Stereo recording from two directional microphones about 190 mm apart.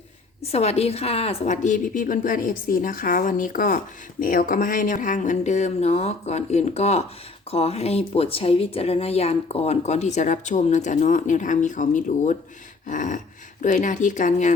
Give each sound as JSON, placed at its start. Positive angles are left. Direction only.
{"t": 0.5, "sound": "a woman's voice", "side_deg": 35}